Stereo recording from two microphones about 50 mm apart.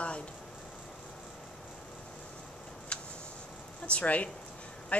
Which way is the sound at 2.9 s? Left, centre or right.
Left.